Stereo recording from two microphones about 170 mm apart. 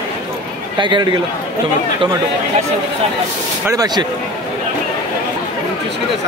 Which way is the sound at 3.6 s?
20° right (ahead or behind).